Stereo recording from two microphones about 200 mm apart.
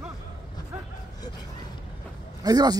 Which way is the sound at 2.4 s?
20° right (ahead or behind).